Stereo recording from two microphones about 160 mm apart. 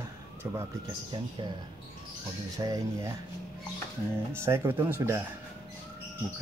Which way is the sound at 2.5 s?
20° right (ahead or behind).